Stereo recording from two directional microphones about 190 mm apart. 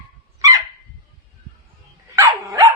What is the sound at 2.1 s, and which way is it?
Dog, 15° right (ahead or behind).